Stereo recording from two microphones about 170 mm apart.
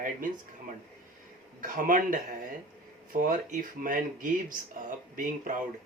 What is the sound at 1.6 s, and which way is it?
Speech, 50° right (ahead or behind).